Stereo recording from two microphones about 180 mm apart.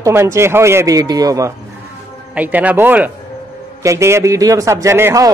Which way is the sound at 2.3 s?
10° right (ahead or behind).